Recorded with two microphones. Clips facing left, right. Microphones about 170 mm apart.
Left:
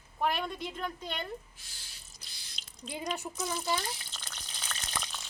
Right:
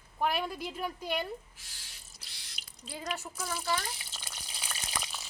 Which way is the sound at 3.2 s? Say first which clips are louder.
Left 4 dB; 15° left (ahead or behind).